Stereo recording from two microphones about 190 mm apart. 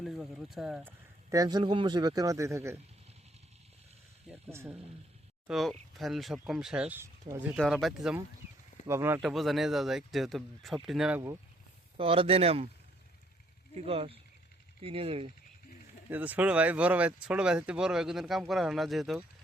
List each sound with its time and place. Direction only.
0.0 s speech: centre (ahead or behind)
1.3 s a man's voice: 20° right (ahead or behind)
4.4 s speech: 15° right (ahead or behind)
5.5 s speech: centre (ahead or behind)
7.5 s speech: centre (ahead or behind)
8.9 s speech: 15° right (ahead or behind)
9.2 s speech: centre (ahead or behind)
11.9 s a man's voice: 30° right (ahead or behind)
13.7 s a man's voice: 30° right (ahead or behind)
16.0 s speech: 10° right (ahead or behind)